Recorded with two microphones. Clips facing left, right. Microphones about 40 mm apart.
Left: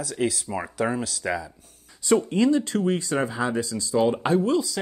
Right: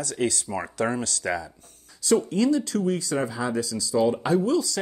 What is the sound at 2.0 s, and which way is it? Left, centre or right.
Speech, left.